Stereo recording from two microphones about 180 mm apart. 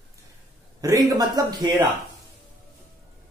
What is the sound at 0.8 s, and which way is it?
Speech, 20° right (ahead or behind).